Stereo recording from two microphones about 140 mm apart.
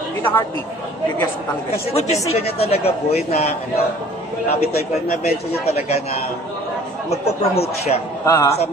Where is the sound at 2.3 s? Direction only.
45° left (ahead or behind).